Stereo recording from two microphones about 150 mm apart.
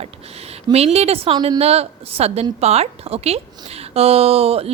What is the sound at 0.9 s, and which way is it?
A woman's voice, 40° right (ahead or behind).